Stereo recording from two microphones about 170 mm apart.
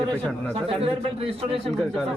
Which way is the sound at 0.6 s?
35° right (ahead or behind).